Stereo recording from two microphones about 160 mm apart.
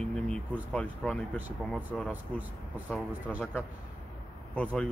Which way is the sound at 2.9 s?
5° left (ahead or behind).